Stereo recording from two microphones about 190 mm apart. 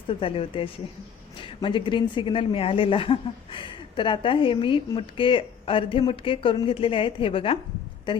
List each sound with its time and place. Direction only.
0.1 s a woman's voice: 30° left (ahead or behind)